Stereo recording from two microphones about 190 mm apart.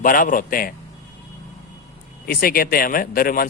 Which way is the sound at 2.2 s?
50° left (ahead or behind).